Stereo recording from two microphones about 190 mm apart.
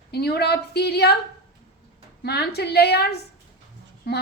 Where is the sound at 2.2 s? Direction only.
60° left (ahead or behind).